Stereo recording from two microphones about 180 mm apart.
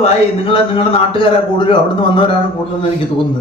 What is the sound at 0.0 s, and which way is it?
A woman's voice, 30° left (ahead or behind).